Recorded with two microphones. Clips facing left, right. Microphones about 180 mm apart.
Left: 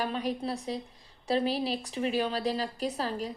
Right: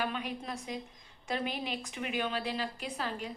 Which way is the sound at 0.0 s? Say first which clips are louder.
Left 5 dB; 35° left (ahead or behind).